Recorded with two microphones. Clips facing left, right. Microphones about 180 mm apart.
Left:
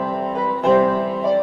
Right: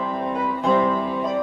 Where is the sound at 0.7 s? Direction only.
45° left (ahead or behind).